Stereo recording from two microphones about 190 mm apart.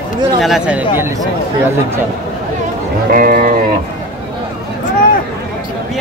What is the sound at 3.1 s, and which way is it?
Speech, 45° right (ahead or behind).